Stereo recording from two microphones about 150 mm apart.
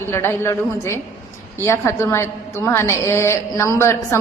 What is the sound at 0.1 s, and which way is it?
A woman's voice, 15° left (ahead or behind).